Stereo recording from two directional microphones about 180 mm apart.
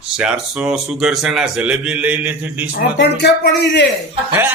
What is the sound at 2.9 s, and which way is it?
Speech, 70° left (ahead or behind).